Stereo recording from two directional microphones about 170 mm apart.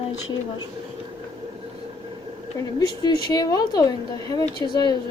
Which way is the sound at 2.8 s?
20° left (ahead or behind).